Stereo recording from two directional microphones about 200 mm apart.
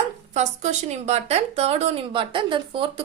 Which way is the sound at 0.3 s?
35° right (ahead or behind).